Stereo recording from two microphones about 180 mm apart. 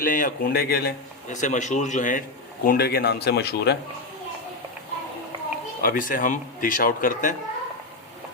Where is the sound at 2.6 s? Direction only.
60° left (ahead or behind).